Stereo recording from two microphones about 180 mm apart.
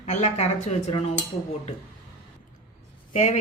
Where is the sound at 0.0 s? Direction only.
40° left (ahead or behind).